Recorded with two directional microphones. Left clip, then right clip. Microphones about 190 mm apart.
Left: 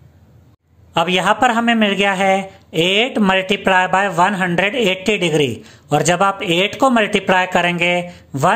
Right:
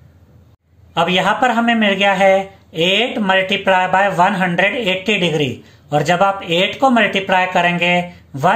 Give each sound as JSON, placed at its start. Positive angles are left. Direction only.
{"t": 0.9, "sound": "a man's voice", "side_deg": 40}